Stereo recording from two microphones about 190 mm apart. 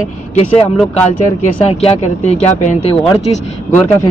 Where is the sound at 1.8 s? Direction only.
35° left (ahead or behind).